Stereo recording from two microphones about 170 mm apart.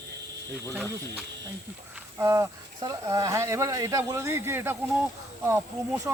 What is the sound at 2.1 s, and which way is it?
Speech, 15° right (ahead or behind).